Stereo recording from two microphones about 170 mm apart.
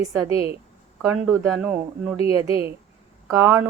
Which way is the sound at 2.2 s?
15° right (ahead or behind).